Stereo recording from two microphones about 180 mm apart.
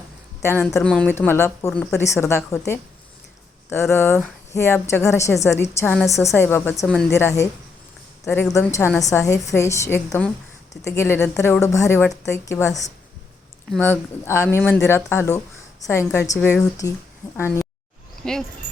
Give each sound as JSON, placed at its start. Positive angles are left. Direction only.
{"t": 0.4, "sound": "speech", "side_deg": 15}
{"t": 5.8, "sound": "a woman's voice", "side_deg": 5}
{"t": 6.1, "sound": "speech", "side_deg": 15}
{"t": 8.5, "sound": "speech", "side_deg": 15}
{"t": 18.2, "sound": "speech", "side_deg": 5}